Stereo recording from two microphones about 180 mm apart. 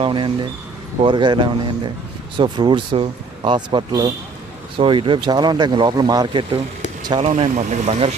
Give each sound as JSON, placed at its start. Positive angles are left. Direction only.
{"t": 0.0, "sound": "speech", "side_deg": -30}
{"t": 7.2, "sound": "speech", "side_deg": -40}